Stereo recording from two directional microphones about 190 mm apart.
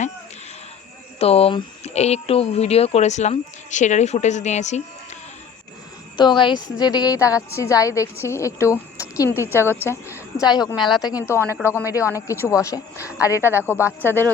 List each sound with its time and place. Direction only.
1.2 s speech: 30° left (ahead or behind)
6.1 s a woman's voice: 25° left (ahead or behind)
9.8 s a sound: 15° left (ahead or behind)
10.5 s a woman's voice: 20° left (ahead or behind)